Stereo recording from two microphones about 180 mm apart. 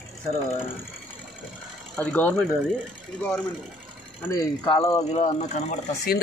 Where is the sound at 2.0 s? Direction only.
5° left (ahead or behind).